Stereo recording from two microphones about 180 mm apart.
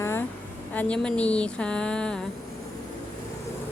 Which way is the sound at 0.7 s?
10° left (ahead or behind).